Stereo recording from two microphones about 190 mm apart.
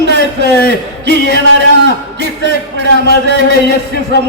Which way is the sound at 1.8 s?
65° right (ahead or behind).